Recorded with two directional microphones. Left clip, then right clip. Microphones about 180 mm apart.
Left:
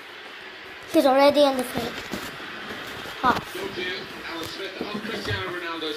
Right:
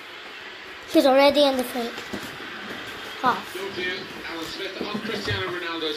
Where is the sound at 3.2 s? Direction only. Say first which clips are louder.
Left 1 dB; 10° left (ahead or behind).